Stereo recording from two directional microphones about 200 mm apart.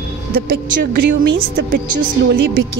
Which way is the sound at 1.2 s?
50° right (ahead or behind).